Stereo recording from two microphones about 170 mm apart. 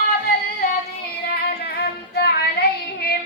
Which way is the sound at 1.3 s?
75° left (ahead or behind).